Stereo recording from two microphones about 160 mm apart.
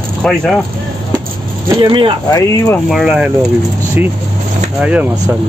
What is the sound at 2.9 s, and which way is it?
Speech, 5° right (ahead or behind).